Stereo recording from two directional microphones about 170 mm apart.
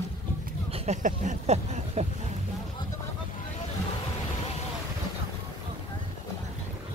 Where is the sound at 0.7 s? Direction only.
45° right (ahead or behind).